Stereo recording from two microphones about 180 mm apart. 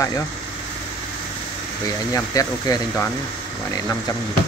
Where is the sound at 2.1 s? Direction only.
15° left (ahead or behind).